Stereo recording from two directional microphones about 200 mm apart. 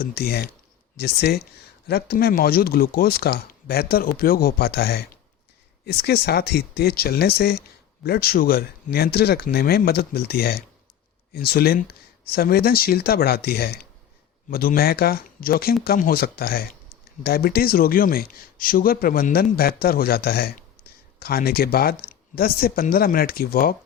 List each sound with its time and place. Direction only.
0.0 s a man's voice: 50° left (ahead or behind)